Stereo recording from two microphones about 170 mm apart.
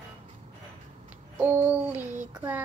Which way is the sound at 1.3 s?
10° right (ahead or behind).